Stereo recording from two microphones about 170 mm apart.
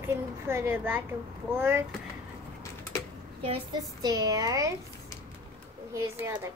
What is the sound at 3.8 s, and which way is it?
Speech, 20° right (ahead or behind).